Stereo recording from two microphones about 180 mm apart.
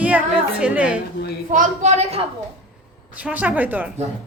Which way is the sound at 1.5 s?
45° right (ahead or behind).